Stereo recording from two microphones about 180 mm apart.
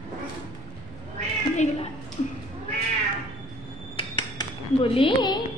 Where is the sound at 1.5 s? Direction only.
40° left (ahead or behind).